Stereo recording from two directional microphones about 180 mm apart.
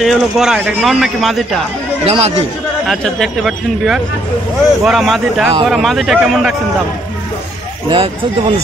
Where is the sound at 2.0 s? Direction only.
35° right (ahead or behind).